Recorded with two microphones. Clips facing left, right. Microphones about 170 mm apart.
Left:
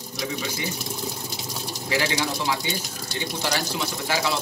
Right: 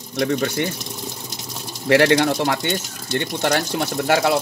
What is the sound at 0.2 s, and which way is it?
Speech, 65° right (ahead or behind).